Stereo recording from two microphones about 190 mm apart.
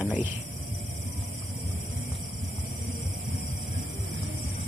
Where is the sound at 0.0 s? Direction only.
5° right (ahead or behind).